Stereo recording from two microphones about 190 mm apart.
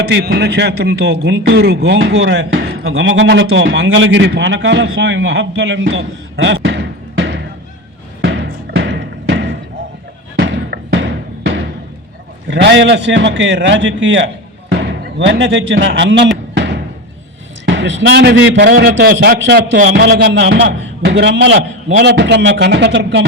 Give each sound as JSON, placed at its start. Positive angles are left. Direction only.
{"t": 0.1, "sound": "a man's voice", "side_deg": -60}
{"t": 8.2, "sound": "music", "side_deg": -90}
{"t": 9.3, "sound": "slam", "side_deg": -65}
{"t": 10.3, "sound": "a sound", "side_deg": -65}
{"t": 12.5, "sound": "a man's voice", "side_deg": -70}
{"t": 16.6, "sound": "music", "side_deg": -65}
{"t": 17.7, "sound": "a man's voice", "side_deg": -70}